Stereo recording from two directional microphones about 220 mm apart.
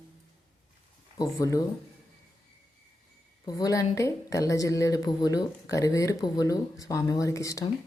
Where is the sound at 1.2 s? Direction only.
15° left (ahead or behind).